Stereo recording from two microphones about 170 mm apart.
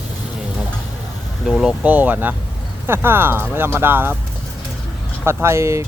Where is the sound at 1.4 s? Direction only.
Centre (ahead or behind).